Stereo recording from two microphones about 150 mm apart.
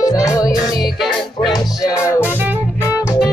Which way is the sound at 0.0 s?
20° left (ahead or behind).